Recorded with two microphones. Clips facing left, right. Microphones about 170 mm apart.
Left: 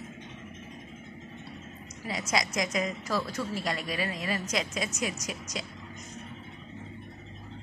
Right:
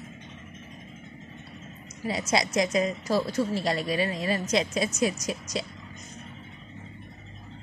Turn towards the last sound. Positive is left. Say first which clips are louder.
# right 6 dB
turn(degrees=-30)  # may be behind; listen again after turning